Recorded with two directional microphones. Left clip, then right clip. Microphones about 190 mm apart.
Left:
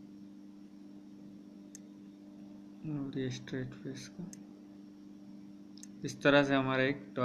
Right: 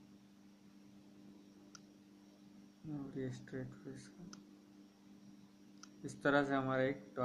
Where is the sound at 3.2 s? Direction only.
45° left (ahead or behind).